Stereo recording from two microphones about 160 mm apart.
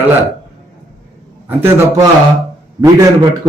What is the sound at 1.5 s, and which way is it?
Speech, 15° right (ahead or behind).